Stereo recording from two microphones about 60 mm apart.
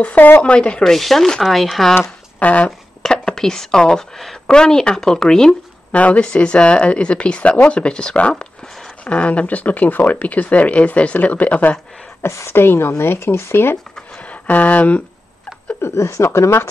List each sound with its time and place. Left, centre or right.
0.0 s speech: left
0.8 s speech: centre
2.3 s speech: left
3.0 s speech: centre
5.9 s speech: left
12.2 s speech: left
14.5 s speech: left
15.8 s speech: left